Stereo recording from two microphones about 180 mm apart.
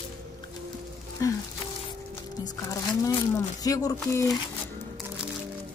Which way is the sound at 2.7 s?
20° left (ahead or behind).